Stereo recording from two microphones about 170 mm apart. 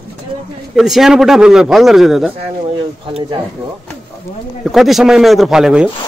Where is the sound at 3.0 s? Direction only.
30° right (ahead or behind).